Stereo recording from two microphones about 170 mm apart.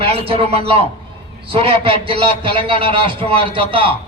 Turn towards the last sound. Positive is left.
turn(degrees=-30)  # may be behind; listen again after turning